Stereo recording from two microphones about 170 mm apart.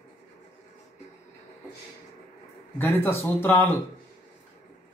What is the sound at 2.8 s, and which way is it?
Speech, 10° left (ahead or behind).